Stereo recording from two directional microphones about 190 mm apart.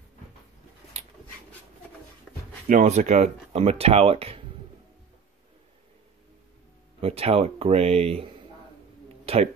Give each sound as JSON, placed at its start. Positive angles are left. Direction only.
{"t": 2.7, "sound": "speech", "side_deg": -40}
{"t": 7.0, "sound": "speech", "side_deg": -30}
{"t": 9.2, "sound": "a sound", "side_deg": -30}